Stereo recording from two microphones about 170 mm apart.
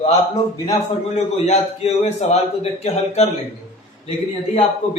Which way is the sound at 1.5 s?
40° left (ahead or behind).